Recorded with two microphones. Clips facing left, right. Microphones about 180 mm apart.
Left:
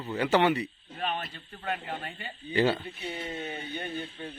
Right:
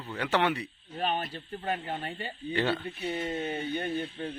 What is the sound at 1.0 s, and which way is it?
Speech, 35° right (ahead or behind).